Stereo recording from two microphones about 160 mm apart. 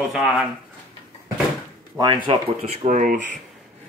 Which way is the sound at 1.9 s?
25° right (ahead or behind).